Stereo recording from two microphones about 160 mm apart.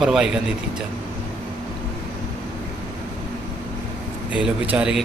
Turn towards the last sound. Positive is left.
turn(degrees=-5)  # may be behind; listen again after turning